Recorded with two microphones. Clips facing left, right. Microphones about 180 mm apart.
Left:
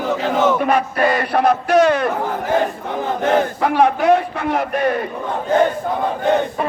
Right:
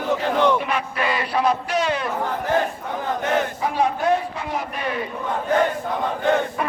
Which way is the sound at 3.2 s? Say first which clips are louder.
Left 7 dB; 80° left.